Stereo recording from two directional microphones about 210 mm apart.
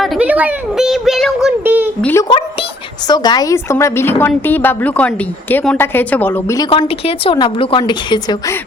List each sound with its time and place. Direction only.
0.0 s a sound: 5° right (ahead or behind)
2.0 s a woman's voice: 10° left (ahead or behind)
3.1 s a woman's voice: 20° left (ahead or behind)
6.7 s a woman's voice: 25° left (ahead or behind)